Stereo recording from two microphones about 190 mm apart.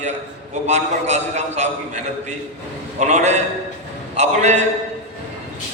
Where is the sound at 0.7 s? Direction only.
35° right (ahead or behind).